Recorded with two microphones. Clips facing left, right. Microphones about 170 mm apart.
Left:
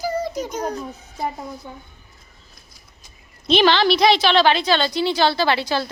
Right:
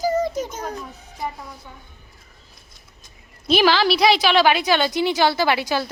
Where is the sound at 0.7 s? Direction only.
40° left (ahead or behind).